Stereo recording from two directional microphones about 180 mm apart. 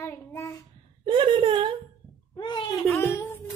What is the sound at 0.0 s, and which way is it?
Child singing, 10° left (ahead or behind).